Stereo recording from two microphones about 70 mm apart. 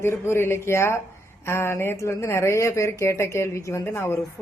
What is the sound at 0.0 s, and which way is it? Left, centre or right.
A man's voice, left.